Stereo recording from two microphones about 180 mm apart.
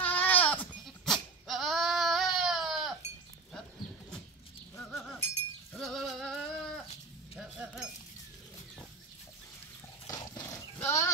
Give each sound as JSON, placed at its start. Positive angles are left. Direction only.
{"t": 0.0, "sound": "goat", "side_deg": 10}
{"t": 5.8, "sound": "goat", "side_deg": 0}
{"t": 7.3, "sound": "a sound", "side_deg": -5}
{"t": 10.0, "sound": "dog", "side_deg": 20}